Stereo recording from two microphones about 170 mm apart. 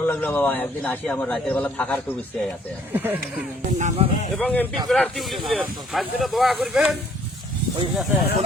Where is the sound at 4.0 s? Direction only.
35° right (ahead or behind).